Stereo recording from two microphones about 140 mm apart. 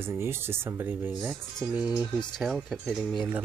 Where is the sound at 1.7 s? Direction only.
5° right (ahead or behind).